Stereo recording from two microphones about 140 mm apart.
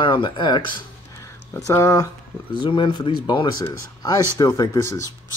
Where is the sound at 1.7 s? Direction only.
25° left (ahead or behind).